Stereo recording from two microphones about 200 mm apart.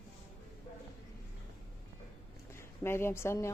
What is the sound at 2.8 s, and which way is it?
Speech, 10° left (ahead or behind).